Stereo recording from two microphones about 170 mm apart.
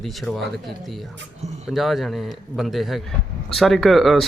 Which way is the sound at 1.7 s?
Centre (ahead or behind).